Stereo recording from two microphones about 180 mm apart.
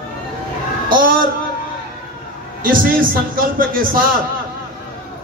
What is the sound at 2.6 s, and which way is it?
A man's voice, 50° right (ahead or behind).